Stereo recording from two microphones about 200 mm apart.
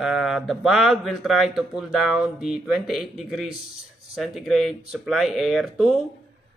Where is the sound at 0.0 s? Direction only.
Centre (ahead or behind).